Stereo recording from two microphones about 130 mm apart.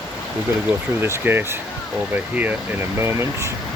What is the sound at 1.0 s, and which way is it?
Speech, 20° right (ahead or behind).